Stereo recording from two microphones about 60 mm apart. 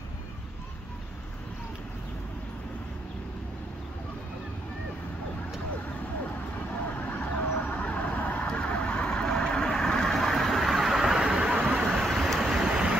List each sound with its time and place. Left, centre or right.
7.0 s vehicle: left; by 11.5 s centre
11.9 s vehicle: centre